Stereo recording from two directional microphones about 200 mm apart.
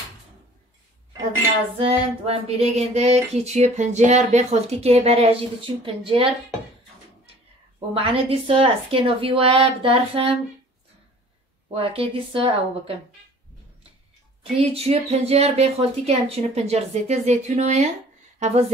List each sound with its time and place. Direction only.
1.8 s speech: 30° right (ahead or behind)
7.9 s a woman's voice: 30° right (ahead or behind)
11.7 s a woman's voice: 30° right (ahead or behind)
14.4 s speech: 30° right (ahead or behind)